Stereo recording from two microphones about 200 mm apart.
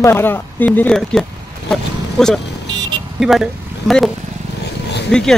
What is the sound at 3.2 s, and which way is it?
Speech, centre (ahead or behind).